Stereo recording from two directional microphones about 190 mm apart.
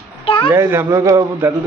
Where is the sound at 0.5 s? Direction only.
15° right (ahead or behind).